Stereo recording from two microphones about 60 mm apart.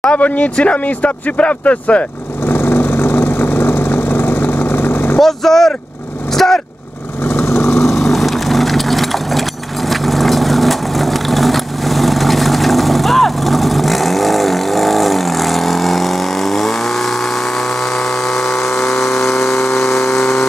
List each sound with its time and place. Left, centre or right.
0.0 s speech: left
2.4 s vehicle: left
5.2 s speech: centre
6.3 s vehicle: centre
7.2 s vehicle: left
7.8 s vehicle: centre